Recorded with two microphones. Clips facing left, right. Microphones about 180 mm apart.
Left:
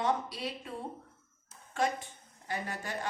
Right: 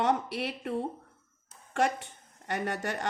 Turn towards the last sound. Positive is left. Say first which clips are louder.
# right 5 dB
turn(degrees=-75)  # may be behind; listen again after turning